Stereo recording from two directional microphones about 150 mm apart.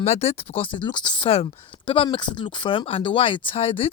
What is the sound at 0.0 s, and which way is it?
Speech, 45° left (ahead or behind).